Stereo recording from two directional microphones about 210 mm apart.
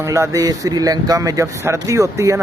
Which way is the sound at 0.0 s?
15° right (ahead or behind).